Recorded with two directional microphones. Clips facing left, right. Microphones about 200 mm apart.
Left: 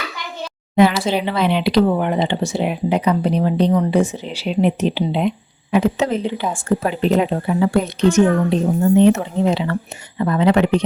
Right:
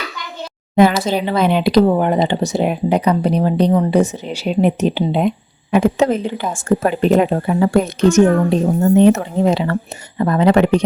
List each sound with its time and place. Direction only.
0.8 s a woman's voice: 45° right (ahead or behind)